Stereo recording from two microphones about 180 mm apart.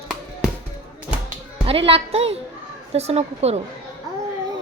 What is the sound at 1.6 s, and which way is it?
Speech, 30° right (ahead or behind).